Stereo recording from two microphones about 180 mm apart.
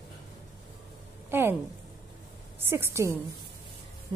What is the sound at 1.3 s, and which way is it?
Speech, 10° right (ahead or behind).